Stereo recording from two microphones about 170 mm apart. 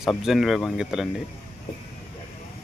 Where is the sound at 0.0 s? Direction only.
Centre (ahead or behind).